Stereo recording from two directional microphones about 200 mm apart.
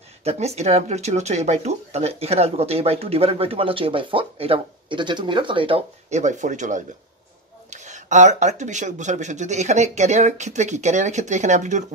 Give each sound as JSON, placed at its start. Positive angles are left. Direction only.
{"t": 0.2, "sound": "speech", "side_deg": -30}